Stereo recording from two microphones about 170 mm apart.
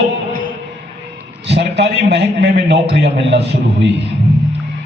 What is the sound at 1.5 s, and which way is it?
A man's voice, 80° right.